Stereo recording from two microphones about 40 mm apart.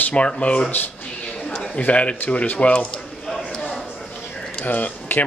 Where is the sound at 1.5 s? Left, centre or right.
Left.